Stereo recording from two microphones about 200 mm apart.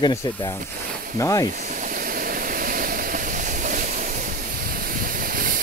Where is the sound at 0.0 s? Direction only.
20° left (ahead or behind).